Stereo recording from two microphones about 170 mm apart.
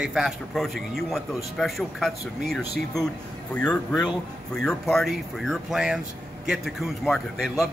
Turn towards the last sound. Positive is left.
turn(degrees=0)  # may be behind; listen again after turning